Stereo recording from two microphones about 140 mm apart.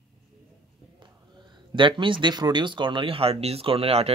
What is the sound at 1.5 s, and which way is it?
Speech, 35° right (ahead or behind).